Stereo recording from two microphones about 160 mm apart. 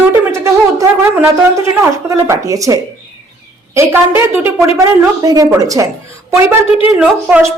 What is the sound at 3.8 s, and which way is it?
A woman's voice, 15° right (ahead or behind).